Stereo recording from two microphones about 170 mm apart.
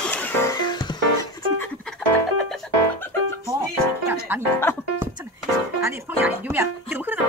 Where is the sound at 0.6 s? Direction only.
25° left (ahead or behind).